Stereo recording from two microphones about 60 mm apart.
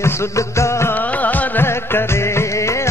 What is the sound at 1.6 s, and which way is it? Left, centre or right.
Music, left.